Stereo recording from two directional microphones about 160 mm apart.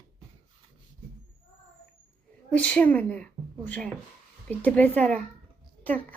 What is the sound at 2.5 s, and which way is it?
Speech, 10° left (ahead or behind).